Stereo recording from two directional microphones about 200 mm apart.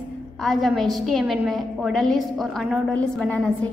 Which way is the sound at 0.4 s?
Centre (ahead or behind).